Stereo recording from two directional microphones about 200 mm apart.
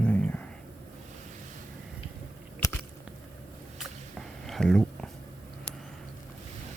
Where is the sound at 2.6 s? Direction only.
20° left (ahead or behind).